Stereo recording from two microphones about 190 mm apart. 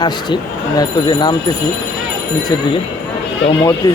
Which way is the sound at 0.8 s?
20° left (ahead or behind).